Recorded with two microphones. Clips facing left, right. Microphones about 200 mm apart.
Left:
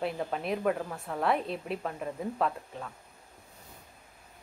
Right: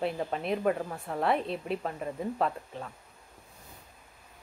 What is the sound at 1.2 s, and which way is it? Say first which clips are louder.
Speech: right 1 dB; centre (ahead or behind).